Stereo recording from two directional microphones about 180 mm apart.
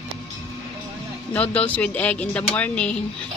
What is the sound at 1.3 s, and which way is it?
A woman's voice, 10° left (ahead or behind).